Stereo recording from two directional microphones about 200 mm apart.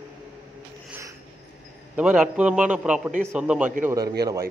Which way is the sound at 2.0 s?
5° right (ahead or behind).